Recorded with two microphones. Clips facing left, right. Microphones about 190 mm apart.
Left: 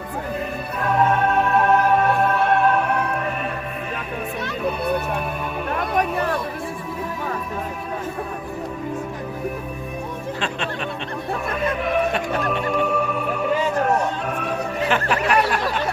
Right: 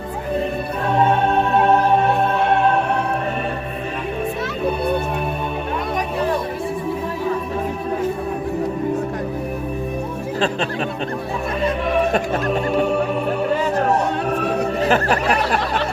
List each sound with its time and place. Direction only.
0.9 s music: 30° right (ahead or behind)
12.1 s speech: 40° right (ahead or behind)
12.7 s music: 30° right (ahead or behind)
14.3 s music: 35° right (ahead or behind)